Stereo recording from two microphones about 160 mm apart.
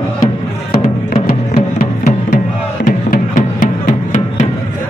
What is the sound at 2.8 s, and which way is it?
Music, 55° left (ahead or behind).